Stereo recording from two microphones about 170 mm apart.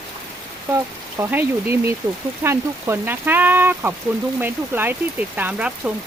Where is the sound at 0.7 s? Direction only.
15° right (ahead or behind).